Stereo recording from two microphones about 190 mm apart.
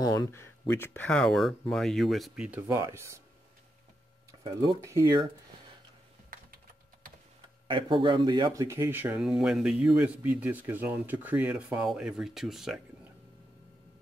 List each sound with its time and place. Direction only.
0.0 s speech: 20° left (ahead or behind); by 3.2 s 15° right (ahead or behind)
4.4 s speech: 20° right (ahead or behind)
7.6 s speech: 25° right (ahead or behind); by 12.8 s centre (ahead or behind)